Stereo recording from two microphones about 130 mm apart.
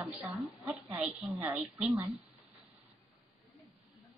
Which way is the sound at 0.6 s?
10° right (ahead or behind).